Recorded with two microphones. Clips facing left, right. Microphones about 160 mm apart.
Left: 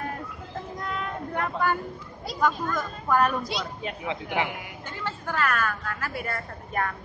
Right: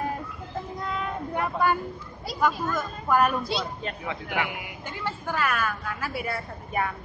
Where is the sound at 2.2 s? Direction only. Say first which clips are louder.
Even; 5° right (ahead or behind).